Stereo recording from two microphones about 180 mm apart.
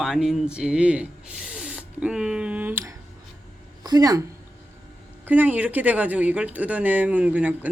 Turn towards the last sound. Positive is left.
turn(degrees=-10)  # may be behind; listen again after turning